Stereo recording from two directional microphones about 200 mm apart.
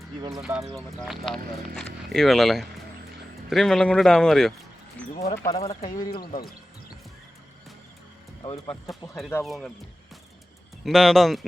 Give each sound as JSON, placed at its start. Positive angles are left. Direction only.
{"t": 0.2, "sound": "speech", "side_deg": -15}
{"t": 0.4, "sound": "speech", "side_deg": 0}
{"t": 5.4, "sound": "speech", "side_deg": 15}
{"t": 6.1, "sound": "speech", "side_deg": 50}
{"t": 8.4, "sound": "speech", "side_deg": 25}
{"t": 8.9, "sound": "speech", "side_deg": 0}
{"t": 10.8, "sound": "speech", "side_deg": 0}